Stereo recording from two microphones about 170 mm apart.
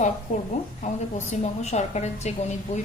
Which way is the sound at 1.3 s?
40° left (ahead or behind).